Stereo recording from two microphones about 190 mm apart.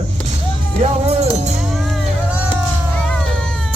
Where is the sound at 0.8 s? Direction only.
35° right (ahead or behind).